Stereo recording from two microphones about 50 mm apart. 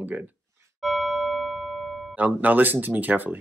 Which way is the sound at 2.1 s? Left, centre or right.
Right.